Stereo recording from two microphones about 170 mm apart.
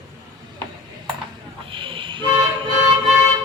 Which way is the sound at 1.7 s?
30° right (ahead or behind).